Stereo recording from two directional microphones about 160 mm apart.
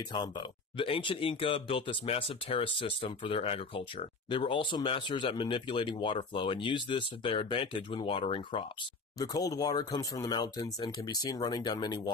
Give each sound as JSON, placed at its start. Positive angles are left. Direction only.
{"t": 0.1, "sound": "speech", "side_deg": 25}
{"t": 9.2, "sound": "speech", "side_deg": 20}